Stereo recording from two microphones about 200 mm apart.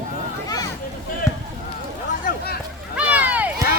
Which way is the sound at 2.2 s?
50° left (ahead or behind).